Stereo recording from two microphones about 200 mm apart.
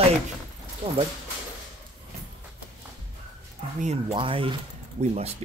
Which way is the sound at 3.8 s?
35° right (ahead or behind).